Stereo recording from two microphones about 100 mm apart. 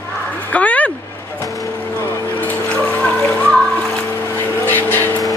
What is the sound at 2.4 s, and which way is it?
Music, 15° left (ahead or behind).